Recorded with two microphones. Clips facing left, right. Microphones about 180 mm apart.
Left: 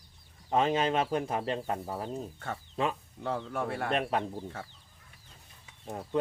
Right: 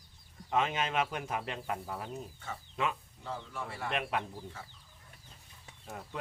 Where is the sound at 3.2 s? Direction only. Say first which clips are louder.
Left 8 dB; 60° left (ahead or behind).